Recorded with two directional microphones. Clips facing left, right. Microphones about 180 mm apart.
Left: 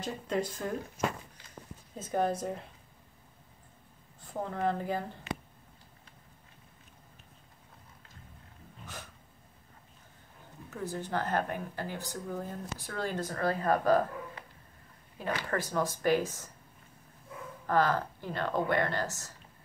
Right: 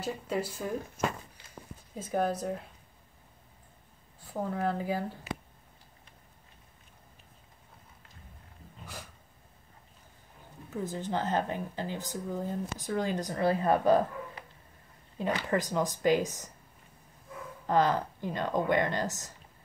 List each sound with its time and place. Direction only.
0.0 s speech: 5° right (ahead or behind)
2.0 s a woman's voice: 5° right (ahead or behind)
4.2 s speech: 5° right (ahead or behind)
10.7 s speech: 20° right (ahead or behind)
15.1 s speech: 20° right (ahead or behind)
17.6 s speech: 20° right (ahead or behind)